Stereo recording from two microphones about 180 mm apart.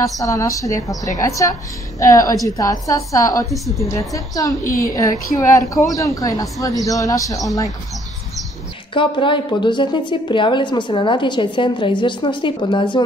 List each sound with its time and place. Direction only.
0.0 s a woman's voice: 15° left (ahead or behind)
3.5 s a woman's voice: centre (ahead or behind)
3.9 s a woman's voice: 20° left (ahead or behind)
4.6 s a woman's voice: 55° left (ahead or behind)
4.9 s a woman's voice: 20° left (ahead or behind)
8.9 s a woman's voice: 30° left (ahead or behind)